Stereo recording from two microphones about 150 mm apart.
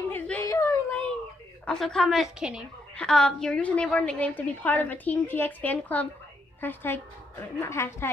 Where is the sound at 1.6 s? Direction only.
5° left (ahead or behind).